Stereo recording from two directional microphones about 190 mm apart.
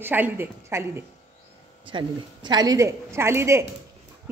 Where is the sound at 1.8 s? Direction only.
25° right (ahead or behind).